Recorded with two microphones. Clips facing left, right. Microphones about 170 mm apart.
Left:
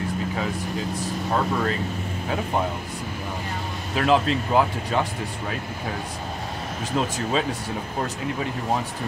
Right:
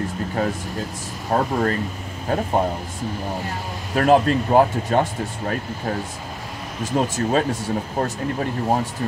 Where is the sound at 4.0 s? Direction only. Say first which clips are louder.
Right 5 dB; 50° right (ahead or behind).